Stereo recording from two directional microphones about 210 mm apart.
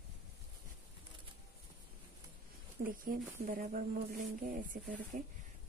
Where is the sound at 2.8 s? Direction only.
40° right (ahead or behind).